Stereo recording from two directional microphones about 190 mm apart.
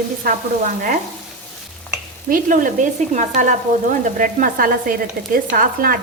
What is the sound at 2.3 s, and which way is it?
Speech, 45° right (ahead or behind).